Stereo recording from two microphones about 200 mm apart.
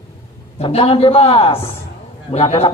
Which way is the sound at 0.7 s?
30° left (ahead or behind).